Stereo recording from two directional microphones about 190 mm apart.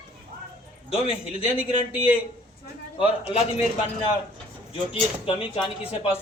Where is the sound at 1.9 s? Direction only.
5° right (ahead or behind).